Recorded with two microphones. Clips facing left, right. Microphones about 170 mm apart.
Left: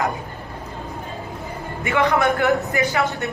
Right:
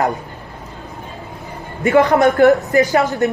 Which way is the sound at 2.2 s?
40° right (ahead or behind).